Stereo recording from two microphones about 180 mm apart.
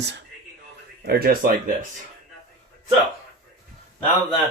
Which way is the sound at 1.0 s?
55° right (ahead or behind).